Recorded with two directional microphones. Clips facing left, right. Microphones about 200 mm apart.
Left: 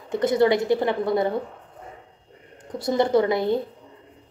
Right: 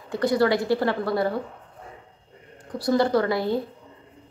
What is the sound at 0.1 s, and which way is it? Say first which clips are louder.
A woman's voice: left 2 dB; 20° left (ahead or behind).